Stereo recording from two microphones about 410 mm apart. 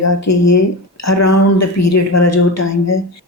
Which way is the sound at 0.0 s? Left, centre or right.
Left.